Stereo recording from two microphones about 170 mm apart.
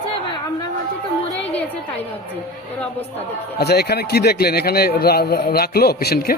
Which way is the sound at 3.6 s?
70° left (ahead or behind).